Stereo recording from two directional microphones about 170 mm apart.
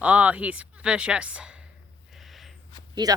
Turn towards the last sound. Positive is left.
turn(degrees=-25)  # may be behind; listen again after turning